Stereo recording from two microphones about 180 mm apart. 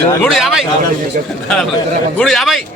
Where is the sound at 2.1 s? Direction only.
Centre (ahead or behind).